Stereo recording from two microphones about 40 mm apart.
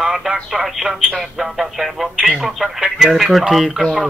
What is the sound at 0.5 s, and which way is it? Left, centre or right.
Speech, centre.